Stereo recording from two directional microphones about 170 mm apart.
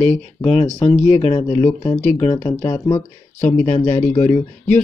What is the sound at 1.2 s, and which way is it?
Speech, 40° left (ahead or behind).